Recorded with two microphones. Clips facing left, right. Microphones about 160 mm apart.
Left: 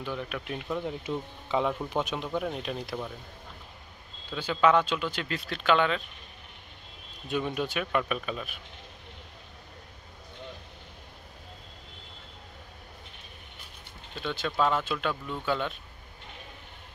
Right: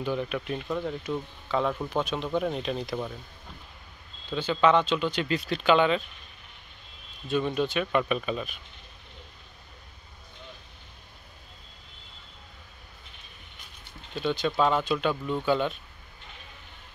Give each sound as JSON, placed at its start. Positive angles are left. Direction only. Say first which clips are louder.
{"t": 0.0, "sound": "speech", "louder": "right 5 dB", "side_deg": 0}
{"t": 4.3, "sound": "speech", "louder": "right 1 dB", "side_deg": 5}
{"t": 7.2, "sound": "speech", "louder": "right 4 dB", "side_deg": 10}
{"t": 14.2, "sound": "speech", "louder": "right 3 dB", "side_deg": 0}